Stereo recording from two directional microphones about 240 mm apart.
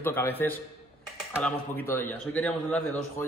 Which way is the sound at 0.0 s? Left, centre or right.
Centre.